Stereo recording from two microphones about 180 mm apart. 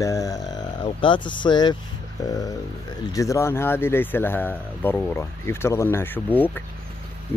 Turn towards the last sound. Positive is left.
turn(degrees=10)  # may be behind; listen again after turning